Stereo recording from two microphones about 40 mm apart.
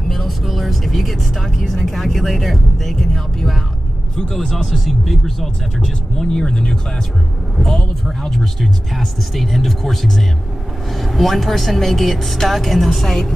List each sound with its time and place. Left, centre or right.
0.1 s speech: centre
4.6 s speech: centre
5.8 s speech: centre